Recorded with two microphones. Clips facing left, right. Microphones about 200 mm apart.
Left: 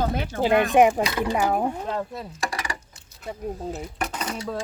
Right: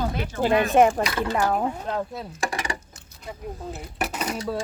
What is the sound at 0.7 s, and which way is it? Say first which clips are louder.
Speech: even; 10° left (ahead or behind).